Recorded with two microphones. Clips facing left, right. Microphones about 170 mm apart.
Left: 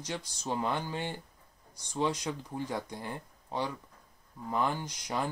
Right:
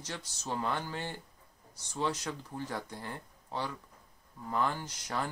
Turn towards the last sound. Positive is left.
turn(degrees=15)  # may be behind; listen again after turning